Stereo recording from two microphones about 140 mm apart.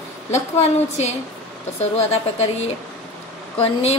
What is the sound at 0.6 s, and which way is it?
Speech, 50° left (ahead or behind).